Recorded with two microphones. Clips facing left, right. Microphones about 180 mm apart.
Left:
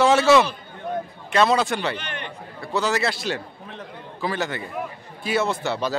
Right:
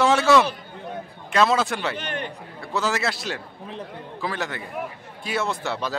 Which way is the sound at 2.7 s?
Centre (ahead or behind).